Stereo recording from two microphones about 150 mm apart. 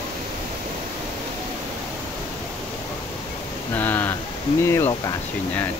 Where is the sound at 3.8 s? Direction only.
10° left (ahead or behind).